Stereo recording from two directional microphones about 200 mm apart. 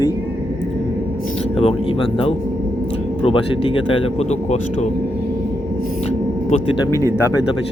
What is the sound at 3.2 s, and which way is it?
Speech, 25° left (ahead or behind).